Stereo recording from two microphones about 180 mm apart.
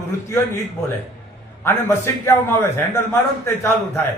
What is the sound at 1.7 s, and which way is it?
A man's voice, 15° left (ahead or behind).